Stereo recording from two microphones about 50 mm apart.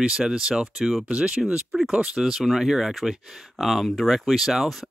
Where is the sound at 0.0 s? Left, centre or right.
Centre.